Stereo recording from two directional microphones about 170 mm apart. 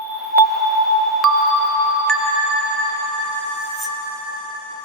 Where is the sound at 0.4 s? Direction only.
Centre (ahead or behind).